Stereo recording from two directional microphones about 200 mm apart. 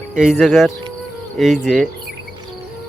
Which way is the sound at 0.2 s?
5° right (ahead or behind).